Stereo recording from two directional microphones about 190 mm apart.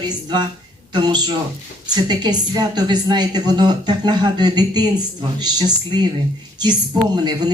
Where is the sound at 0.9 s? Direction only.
20° right (ahead or behind).